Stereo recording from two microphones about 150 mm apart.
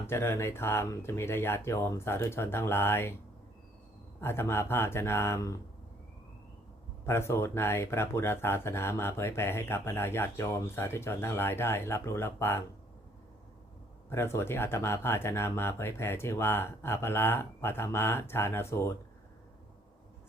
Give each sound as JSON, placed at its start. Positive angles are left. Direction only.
{"t": 0.1, "sound": "speech", "side_deg": 15}
{"t": 4.2, "sound": "speech", "side_deg": 15}
{"t": 7.0, "sound": "speech", "side_deg": 15}
{"t": 14.1, "sound": "speech", "side_deg": 15}